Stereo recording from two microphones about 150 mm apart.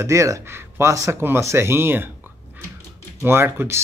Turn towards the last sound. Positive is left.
turn(degrees=-15)  # may be behind; listen again after turning